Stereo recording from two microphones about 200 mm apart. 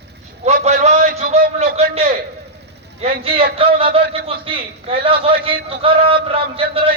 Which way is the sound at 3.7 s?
30° right (ahead or behind).